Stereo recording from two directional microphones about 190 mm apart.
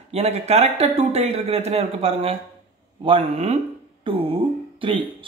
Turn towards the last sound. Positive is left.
turn(degrees=-30)  # may be behind; listen again after turning